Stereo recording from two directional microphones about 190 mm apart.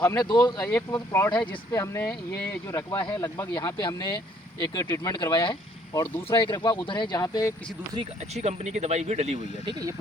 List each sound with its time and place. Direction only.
0.0 s speech: 20° left (ahead or behind)
8.2 s speech: 35° right (ahead or behind)